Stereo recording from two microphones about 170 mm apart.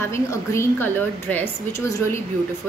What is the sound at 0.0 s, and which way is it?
Speech, 15° left (ahead or behind).